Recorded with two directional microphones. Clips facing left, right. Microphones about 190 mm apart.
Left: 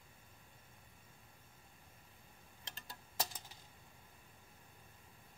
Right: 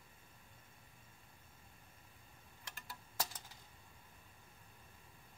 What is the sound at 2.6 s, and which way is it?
Tick-tock, 20° left (ahead or behind).